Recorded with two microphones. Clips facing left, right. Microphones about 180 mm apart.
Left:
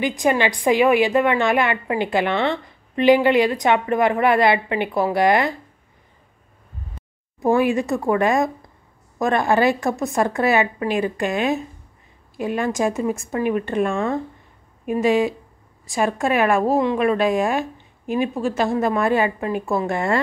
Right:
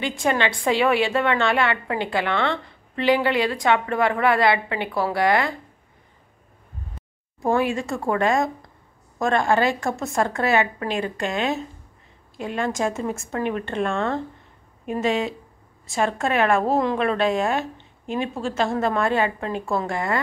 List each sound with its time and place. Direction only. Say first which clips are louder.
0.0 s a woman's voice: left 3 dB; 15° left (ahead or behind)
7.4 s a woman's voice: left 4 dB; 15° left (ahead or behind)
12.4 s a woman's voice: left 3 dB; 15° left (ahead or behind)
15.9 s a woman's voice: left 2 dB; 15° left (ahead or behind)
16.7 s speech: left 2 dB; centre (ahead or behind)
17.0 s a woman's voice: left 3 dB; 15° left (ahead or behind)